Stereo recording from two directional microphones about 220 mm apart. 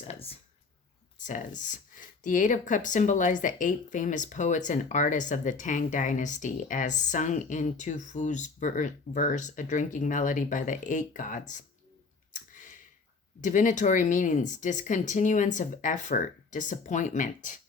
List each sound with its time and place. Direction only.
0.1 s a sound: 25° left (ahead or behind)
1.2 s speech: 35° left (ahead or behind)
12.3 s clicking: 35° left (ahead or behind)
13.4 s speech: 35° left (ahead or behind)